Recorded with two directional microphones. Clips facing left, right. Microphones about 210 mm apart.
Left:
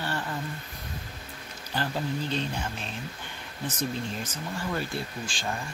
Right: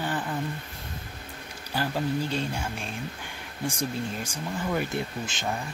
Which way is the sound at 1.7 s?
10° right (ahead or behind).